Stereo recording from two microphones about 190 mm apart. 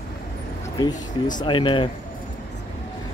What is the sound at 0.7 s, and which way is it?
Speech, 20° left (ahead or behind).